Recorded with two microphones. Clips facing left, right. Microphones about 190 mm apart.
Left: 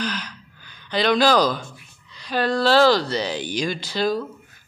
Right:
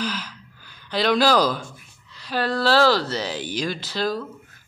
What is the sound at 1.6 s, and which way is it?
Speech, 5° right (ahead or behind).